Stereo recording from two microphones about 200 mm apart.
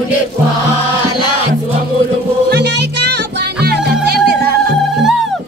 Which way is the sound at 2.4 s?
55° right (ahead or behind).